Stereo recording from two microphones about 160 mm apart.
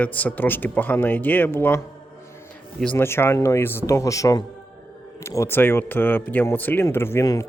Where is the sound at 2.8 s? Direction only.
15° left (ahead or behind).